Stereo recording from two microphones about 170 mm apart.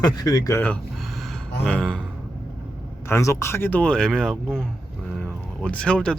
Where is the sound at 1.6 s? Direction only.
5° left (ahead or behind).